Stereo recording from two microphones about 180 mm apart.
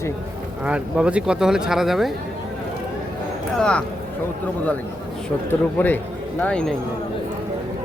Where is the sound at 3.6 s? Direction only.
5° left (ahead or behind).